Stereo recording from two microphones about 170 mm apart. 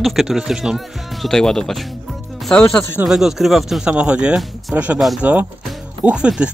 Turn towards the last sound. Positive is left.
turn(degrees=-5)  # may be behind; listen again after turning